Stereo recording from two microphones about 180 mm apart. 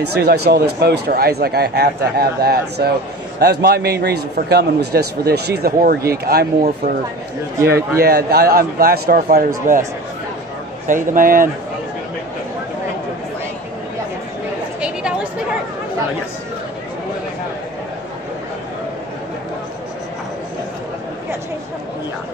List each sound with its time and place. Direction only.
0.1 s a man's voice: 65° right (ahead or behind)
8.0 s speech: 60° right (ahead or behind)
10.9 s a man's voice: 50° right (ahead or behind)
14.8 s a sound: 5° right (ahead or behind)